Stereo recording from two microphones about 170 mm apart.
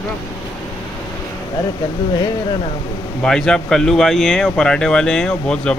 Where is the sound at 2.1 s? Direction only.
20° left (ahead or behind).